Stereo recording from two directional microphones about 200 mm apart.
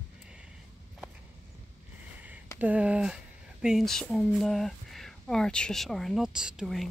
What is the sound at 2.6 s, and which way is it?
Speech, 5° right (ahead or behind).